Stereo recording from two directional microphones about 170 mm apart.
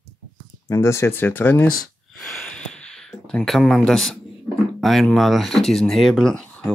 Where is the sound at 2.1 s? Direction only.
Centre (ahead or behind).